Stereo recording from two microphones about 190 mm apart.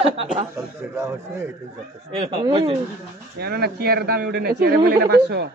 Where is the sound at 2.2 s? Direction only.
25° right (ahead or behind).